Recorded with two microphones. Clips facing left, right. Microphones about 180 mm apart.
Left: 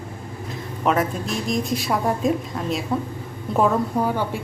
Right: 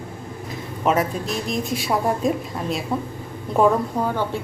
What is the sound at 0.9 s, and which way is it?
A woman's voice, centre (ahead or behind).